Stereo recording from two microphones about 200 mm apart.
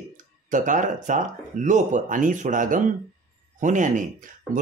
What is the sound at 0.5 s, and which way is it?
Speech, 40° right (ahead or behind).